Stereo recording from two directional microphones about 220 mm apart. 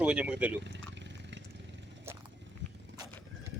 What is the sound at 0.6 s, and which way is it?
Speech, 55° right (ahead or behind).